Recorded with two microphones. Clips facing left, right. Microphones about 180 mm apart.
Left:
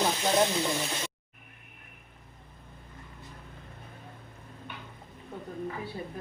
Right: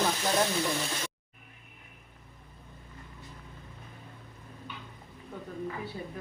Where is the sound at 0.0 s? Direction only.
20° left (ahead or behind).